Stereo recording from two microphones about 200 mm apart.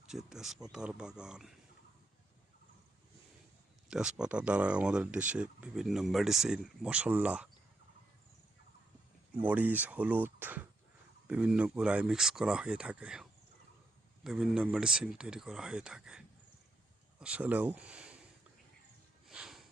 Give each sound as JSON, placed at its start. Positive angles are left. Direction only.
{"t": 0.1, "sound": "speech", "side_deg": 0}
{"t": 3.8, "sound": "speech", "side_deg": -5}
{"t": 9.3, "sound": "speech", "side_deg": -5}
{"t": 14.3, "sound": "speech", "side_deg": -5}
{"t": 19.3, "sound": "a sound", "side_deg": -5}